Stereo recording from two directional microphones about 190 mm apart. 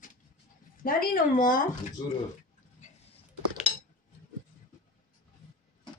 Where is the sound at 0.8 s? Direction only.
50° left (ahead or behind).